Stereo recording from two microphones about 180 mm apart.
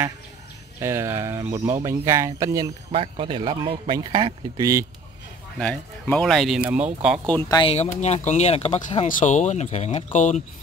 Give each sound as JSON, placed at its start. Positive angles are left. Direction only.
{"t": 0.7, "sound": "speech", "side_deg": -15}
{"t": 2.9, "sound": "speech", "side_deg": -30}
{"t": 5.6, "sound": "speech", "side_deg": 5}
{"t": 7.4, "sound": "speech", "side_deg": 20}
{"t": 7.7, "sound": "speech", "side_deg": 35}
{"t": 9.0, "sound": "speech", "side_deg": 45}